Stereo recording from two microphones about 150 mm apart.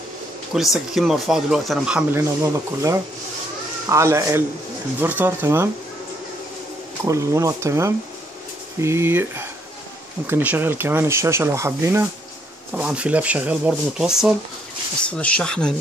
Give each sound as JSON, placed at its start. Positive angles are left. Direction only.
{"t": 0.5, "sound": "speech", "side_deg": -5}
{"t": 2.1, "sound": "speech", "side_deg": -20}
{"t": 7.1, "sound": "speech", "side_deg": -20}
{"t": 15.0, "sound": "speech", "side_deg": 10}